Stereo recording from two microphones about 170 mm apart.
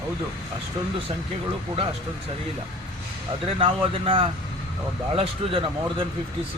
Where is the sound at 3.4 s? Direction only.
30° right (ahead or behind).